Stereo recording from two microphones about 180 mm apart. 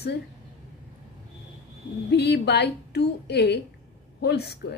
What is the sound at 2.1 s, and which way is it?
A woman's voice, 65° left (ahead or behind).